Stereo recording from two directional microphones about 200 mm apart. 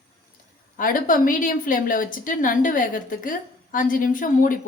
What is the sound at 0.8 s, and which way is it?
A woman's voice, 45° left (ahead or behind).